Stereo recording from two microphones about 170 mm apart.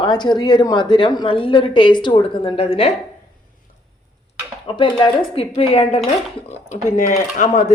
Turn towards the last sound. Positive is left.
turn(degrees=45)  # may be behind; listen again after turning